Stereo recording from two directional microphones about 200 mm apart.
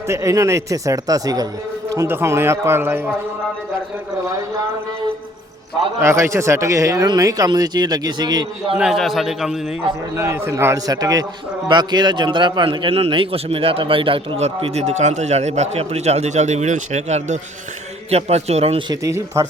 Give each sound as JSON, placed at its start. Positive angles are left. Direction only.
{"t": 0.1, "sound": "speech", "side_deg": -15}
{"t": 6.0, "sound": "speech", "side_deg": -15}
{"t": 8.7, "sound": "a man's voice", "side_deg": 0}
{"t": 10.2, "sound": "a man's voice", "side_deg": -10}
{"t": 19.0, "sound": "speech", "side_deg": -15}